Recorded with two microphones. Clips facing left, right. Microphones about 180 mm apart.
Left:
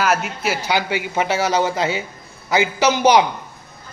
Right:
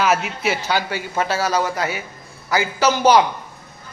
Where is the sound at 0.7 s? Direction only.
15° left (ahead or behind).